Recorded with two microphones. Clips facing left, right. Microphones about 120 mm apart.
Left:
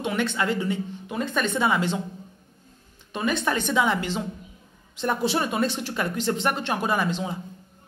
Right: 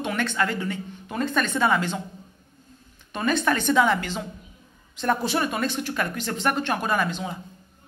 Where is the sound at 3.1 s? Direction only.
15° left (ahead or behind).